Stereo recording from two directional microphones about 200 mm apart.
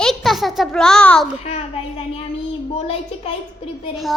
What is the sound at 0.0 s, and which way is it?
A child's voice, centre (ahead or behind).